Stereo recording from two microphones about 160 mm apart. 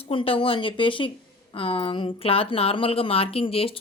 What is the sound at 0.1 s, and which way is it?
Speech, 35° left (ahead or behind).